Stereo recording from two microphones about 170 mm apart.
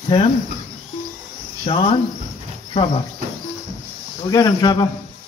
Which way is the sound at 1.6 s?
30° left (ahead or behind).